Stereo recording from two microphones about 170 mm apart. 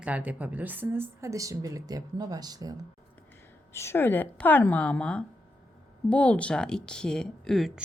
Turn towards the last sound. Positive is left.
turn(degrees=0)  # may be behind; listen again after turning